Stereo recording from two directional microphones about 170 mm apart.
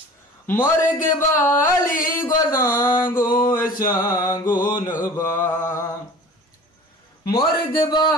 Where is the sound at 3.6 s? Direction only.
55° left (ahead or behind).